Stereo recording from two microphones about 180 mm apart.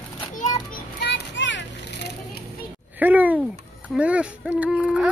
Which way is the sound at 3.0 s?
10° right (ahead or behind).